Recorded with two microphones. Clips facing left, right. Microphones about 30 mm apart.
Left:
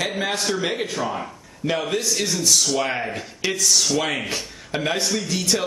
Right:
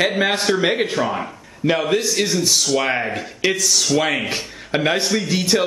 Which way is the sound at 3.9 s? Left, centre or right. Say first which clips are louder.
Right 4 dB; centre.